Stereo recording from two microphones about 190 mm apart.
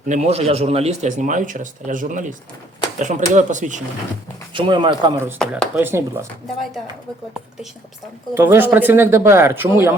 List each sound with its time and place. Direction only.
0.1 s a man's voice: 35° right (ahead or behind)
4.5 s speech: 25° right (ahead or behind)
5.4 s speech: 5° left (ahead or behind)
5.7 s speech: 10° right (ahead or behind)
8.4 s speech: 10° right (ahead or behind)